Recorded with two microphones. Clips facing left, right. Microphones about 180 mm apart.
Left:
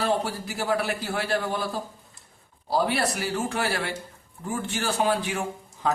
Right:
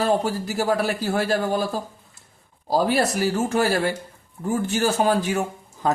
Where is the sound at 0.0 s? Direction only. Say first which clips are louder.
Right 4 dB; 40° right (ahead or behind).